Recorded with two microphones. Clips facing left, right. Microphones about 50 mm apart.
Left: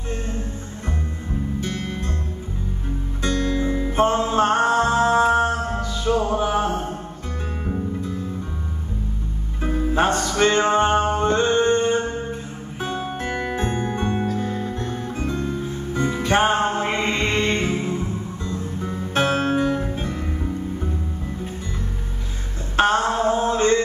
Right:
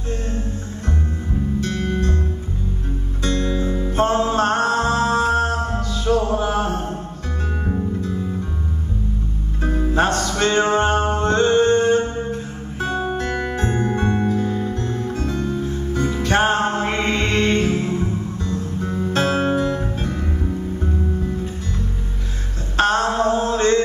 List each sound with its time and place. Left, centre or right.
3.2 s music: centre
9.6 s music: centre
11.1 s mantra: centre
13.2 s music: centre
20.0 s music: centre
22.8 s mantra: centre